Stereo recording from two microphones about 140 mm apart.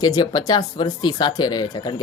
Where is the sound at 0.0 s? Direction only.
30° left (ahead or behind).